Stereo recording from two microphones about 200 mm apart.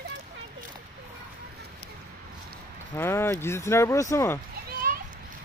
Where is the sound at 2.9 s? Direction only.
10° left (ahead or behind).